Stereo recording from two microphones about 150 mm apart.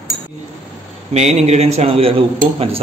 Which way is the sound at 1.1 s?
45° right (ahead or behind).